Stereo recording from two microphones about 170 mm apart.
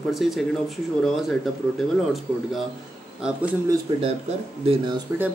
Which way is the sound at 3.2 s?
5° right (ahead or behind).